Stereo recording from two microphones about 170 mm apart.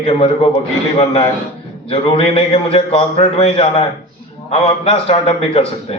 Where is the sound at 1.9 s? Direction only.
35° left (ahead or behind).